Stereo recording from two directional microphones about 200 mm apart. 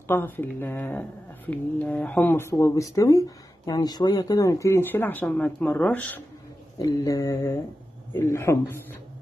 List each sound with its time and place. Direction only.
0.1 s speech: 10° left (ahead or behind)